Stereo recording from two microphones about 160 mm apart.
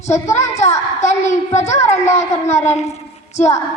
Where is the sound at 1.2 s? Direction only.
45° left (ahead or behind).